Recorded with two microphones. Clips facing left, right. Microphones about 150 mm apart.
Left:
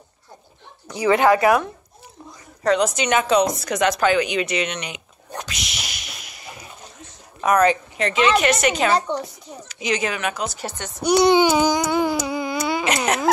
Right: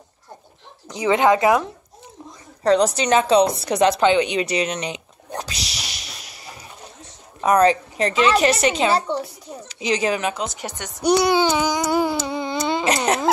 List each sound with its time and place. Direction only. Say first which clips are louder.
0.8 s speech: even; 20° right (ahead or behind)
2.6 s speech: right 2 dB; 35° right (ahead or behind)
5.4 s a sound: right 1 dB; 35° right (ahead or behind)
7.4 s speech: right 1 dB; 30° right (ahead or behind)
8.9 s a woman's voice: even; 5° right (ahead or behind)
9.7 s speech: right 3 dB; 30° right (ahead or behind)
11.1 s child singing: left 5 dB; 20° left (ahead or behind)
12.0 s a sound: even; centre (ahead or behind)
12.4 s a sound: right 4 dB; 25° right (ahead or behind)